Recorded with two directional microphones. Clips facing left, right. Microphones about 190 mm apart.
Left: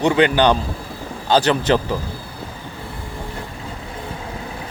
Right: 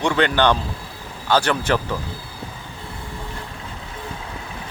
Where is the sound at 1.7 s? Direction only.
25° left (ahead or behind).